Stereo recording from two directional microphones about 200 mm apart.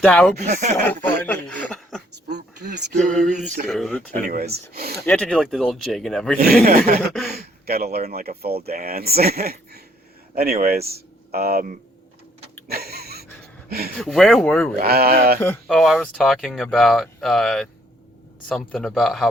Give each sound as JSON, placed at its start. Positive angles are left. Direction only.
{"t": 0.0, "sound": "speech", "side_deg": 5}
{"t": 0.4, "sound": "speech", "side_deg": -40}
{"t": 1.2, "sound": "speech", "side_deg": 5}
{"t": 2.3, "sound": "a sound", "side_deg": -55}
{"t": 3.7, "sound": "speech", "side_deg": 0}
{"t": 4.2, "sound": "speech", "side_deg": -50}
{"t": 4.9, "sound": "speech", "side_deg": 5}
{"t": 6.4, "sound": "speech", "side_deg": -50}
{"t": 12.6, "sound": "a sound", "side_deg": -50}
{"t": 13.7, "sound": "speech", "side_deg": -50}
{"t": 13.9, "sound": "speech", "side_deg": 0}
{"t": 14.8, "sound": "speech", "side_deg": -50}
{"t": 15.6, "sound": "speech", "side_deg": 0}